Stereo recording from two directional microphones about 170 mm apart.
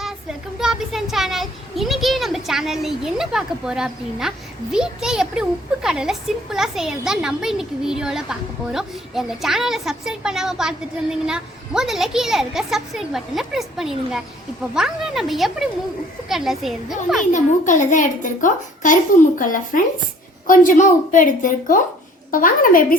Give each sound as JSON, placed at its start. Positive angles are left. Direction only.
{"t": 0.0, "sound": "a child's voice", "side_deg": -5}
{"t": 17.3, "sound": "a child's voice", "side_deg": 45}